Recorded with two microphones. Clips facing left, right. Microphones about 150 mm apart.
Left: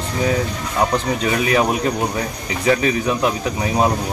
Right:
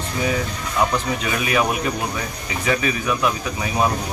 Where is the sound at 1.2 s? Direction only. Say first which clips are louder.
Left 5 dB; 30° left (ahead or behind).